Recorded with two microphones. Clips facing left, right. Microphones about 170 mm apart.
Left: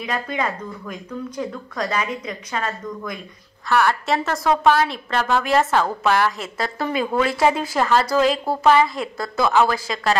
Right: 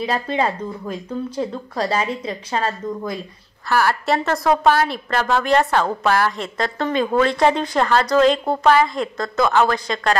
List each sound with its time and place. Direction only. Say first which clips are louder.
0.0 s speech: right 4 dB; 30° right (ahead or behind)
3.6 s a woman's voice: even; centre (ahead or behind)